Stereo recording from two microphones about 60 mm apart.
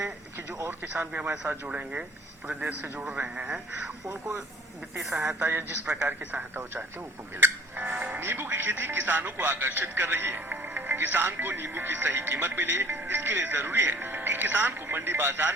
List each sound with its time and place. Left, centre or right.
0.7 s speech: right
1.6 s a man's voice: right
4.0 s speech: right
4.9 s speech: centre
5.4 s speech: right
5.8 s a man's voice: centre
7.3 s music: right
7.9 s a man's voice: right
8.2 s speech: right